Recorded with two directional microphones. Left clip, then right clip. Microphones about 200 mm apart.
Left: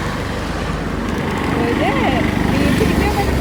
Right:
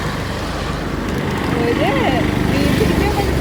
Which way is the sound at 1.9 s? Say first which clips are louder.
Even; 50° right (ahead or behind).